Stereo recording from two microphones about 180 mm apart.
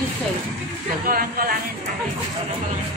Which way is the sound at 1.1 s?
55° right (ahead or behind).